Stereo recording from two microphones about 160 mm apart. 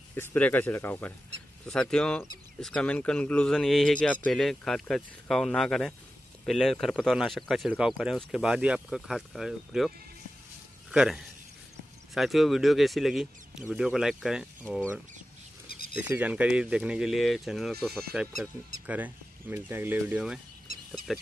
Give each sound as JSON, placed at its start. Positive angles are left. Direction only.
{"t": 0.1, "sound": "speech", "side_deg": 10}
{"t": 15.7, "sound": "a sound", "side_deg": 70}
{"t": 16.0, "sound": "speech", "side_deg": -10}